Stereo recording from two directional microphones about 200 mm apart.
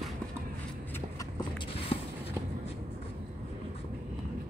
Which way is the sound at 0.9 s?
15° left (ahead or behind).